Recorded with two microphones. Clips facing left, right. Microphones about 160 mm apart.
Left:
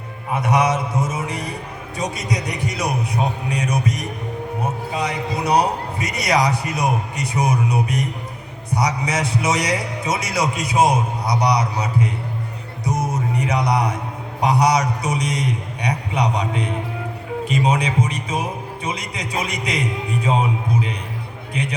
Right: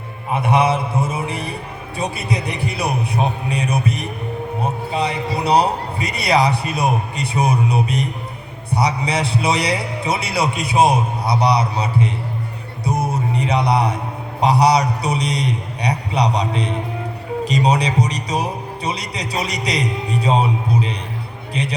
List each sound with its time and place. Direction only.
0.3 s a man's voice: 25° right (ahead or behind)
13.1 s music: 30° right (ahead or behind)
14.4 s a man's voice: 30° right (ahead or behind)